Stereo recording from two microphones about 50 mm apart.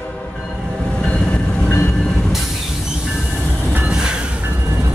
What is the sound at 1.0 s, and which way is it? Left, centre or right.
Train, left.